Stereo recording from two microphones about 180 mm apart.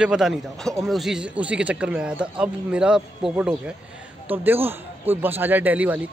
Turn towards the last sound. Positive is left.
turn(degrees=-10)  # may be behind; listen again after turning